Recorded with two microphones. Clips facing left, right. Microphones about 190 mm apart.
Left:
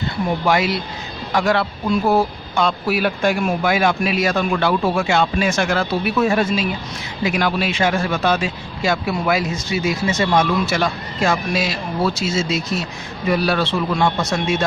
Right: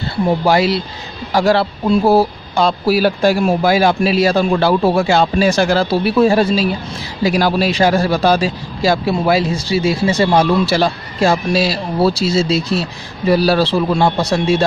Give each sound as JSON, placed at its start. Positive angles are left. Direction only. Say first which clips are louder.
{"t": 0.5, "sound": "a man's voice", "louder": "right 4 dB", "side_deg": -30}